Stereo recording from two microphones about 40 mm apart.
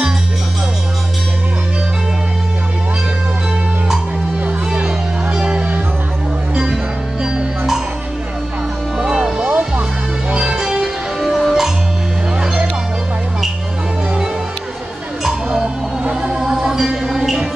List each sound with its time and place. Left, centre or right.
4.8 s music: centre
8.9 s music: centre
10.6 s music: centre
15.5 s music: right; by 17.5 s centre